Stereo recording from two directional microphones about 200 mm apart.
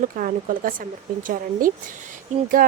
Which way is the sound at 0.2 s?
45° right (ahead or behind).